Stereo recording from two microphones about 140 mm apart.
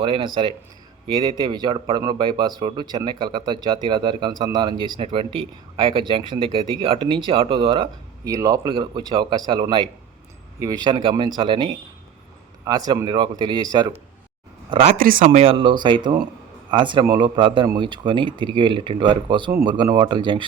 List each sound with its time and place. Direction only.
0.0 s a man's voice: 40° right (ahead or behind)
14.9 s speech: 85° right
15.3 s a man's voice: 45° right (ahead or behind)